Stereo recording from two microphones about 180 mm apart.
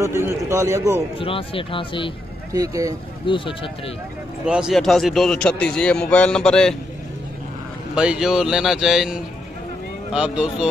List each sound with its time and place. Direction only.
0.0 s a man's voice: 15° right (ahead or behind)
1.1 s speech: 30° left (ahead or behind)
2.5 s speech: 20° right (ahead or behind)
3.3 s speech: 30° left (ahead or behind)
4.5 s a man's voice: 5° right (ahead or behind)
7.9 s a man's voice: 5° right (ahead or behind)